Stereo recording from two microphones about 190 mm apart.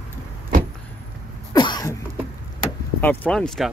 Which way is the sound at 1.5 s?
20° left (ahead or behind).